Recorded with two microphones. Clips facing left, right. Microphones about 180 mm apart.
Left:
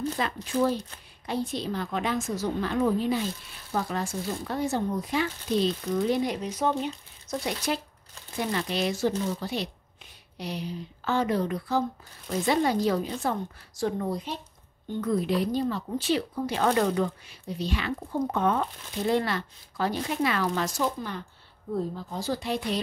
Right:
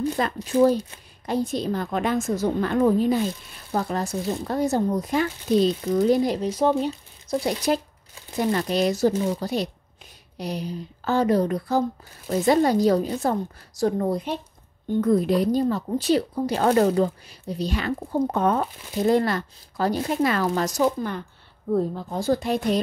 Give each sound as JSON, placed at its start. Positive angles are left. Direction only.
{"t": 0.2, "sound": "a woman's voice", "side_deg": -45}
{"t": 21.7, "sound": "a woman's voice", "side_deg": -55}